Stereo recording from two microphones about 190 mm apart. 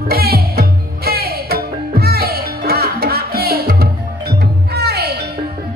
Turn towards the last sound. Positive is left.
turn(degrees=-60)  # may be behind; listen again after turning